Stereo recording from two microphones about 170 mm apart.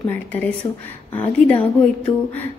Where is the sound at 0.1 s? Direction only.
10° left (ahead or behind).